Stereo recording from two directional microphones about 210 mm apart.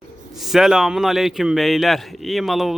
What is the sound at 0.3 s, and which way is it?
A man's voice, centre (ahead or behind).